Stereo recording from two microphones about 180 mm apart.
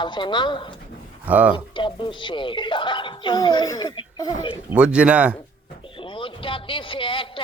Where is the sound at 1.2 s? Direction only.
10° right (ahead or behind).